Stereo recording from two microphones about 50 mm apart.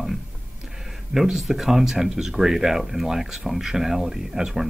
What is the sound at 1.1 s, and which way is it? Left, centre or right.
Speech, centre.